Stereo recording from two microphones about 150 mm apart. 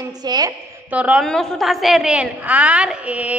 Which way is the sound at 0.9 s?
10° right (ahead or behind).